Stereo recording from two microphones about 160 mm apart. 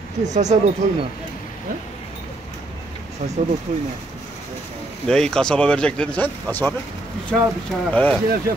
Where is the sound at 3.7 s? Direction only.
50° right (ahead or behind).